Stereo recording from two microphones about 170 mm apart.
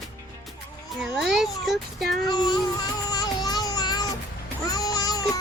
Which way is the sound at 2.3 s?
25° left (ahead or behind).